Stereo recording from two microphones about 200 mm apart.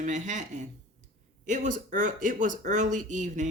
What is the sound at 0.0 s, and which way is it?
Speech, 35° right (ahead or behind).